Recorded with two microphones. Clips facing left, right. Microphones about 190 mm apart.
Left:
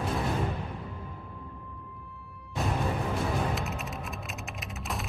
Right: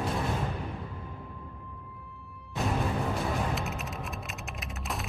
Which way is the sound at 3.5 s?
Centre (ahead or behind).